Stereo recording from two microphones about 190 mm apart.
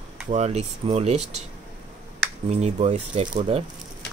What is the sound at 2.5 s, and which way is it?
Speech, 35° right (ahead or behind).